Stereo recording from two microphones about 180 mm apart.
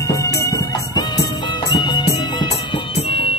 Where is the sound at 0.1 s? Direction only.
20° left (ahead or behind).